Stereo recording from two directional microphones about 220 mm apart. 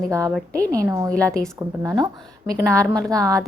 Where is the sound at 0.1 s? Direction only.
15° right (ahead or behind).